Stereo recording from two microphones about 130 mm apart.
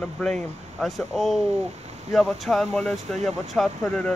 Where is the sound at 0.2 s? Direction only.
5° left (ahead or behind).